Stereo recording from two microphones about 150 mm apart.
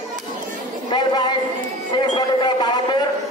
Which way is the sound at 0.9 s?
30° left (ahead or behind).